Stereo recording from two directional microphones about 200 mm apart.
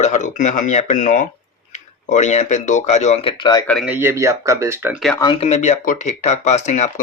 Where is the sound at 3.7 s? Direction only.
Centre (ahead or behind).